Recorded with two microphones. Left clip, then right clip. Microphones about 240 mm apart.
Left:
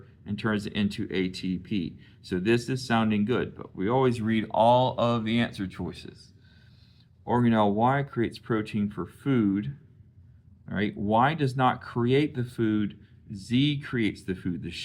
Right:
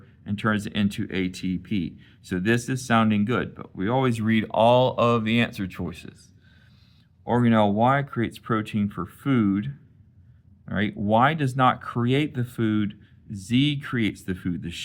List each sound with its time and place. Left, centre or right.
0.3 s speech: right
7.3 s speech: right